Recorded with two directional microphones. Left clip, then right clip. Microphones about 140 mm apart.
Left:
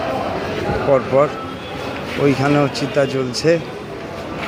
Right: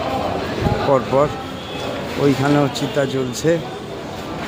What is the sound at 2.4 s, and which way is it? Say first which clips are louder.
A man's voice: left 1 dB; 5° right (ahead or behind).